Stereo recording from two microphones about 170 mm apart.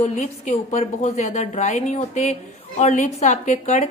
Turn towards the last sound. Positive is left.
turn(degrees=45)  # may be behind; listen again after turning